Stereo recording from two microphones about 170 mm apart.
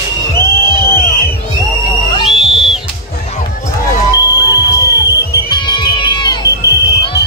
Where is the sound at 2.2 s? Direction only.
Centre (ahead or behind).